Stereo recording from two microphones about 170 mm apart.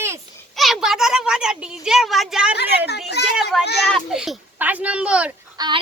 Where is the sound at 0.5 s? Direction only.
Centre (ahead or behind).